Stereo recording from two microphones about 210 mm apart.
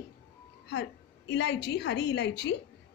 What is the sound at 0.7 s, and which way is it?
A woman's voice, 55° left (ahead or behind).